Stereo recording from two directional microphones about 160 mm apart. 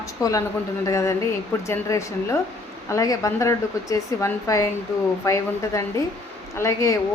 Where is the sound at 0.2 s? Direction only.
20° left (ahead or behind).